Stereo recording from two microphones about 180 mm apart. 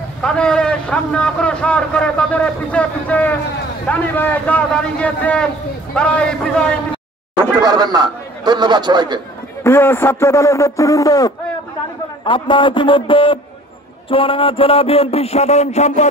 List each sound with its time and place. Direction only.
0.2 s a man's voice: 5° left (ahead or behind)
7.6 s a man's voice: 20° right (ahead or behind)
9.6 s a man's voice: 15° left (ahead or behind); by 15.9 s 40° left (ahead or behind)